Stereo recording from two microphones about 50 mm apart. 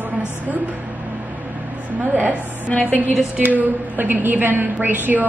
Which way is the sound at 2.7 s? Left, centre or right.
Left.